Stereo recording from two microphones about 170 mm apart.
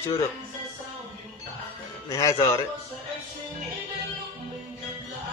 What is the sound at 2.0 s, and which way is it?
Speech, 20° left (ahead or behind).